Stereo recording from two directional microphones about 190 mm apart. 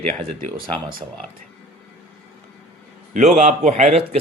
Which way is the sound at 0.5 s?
50° right (ahead or behind).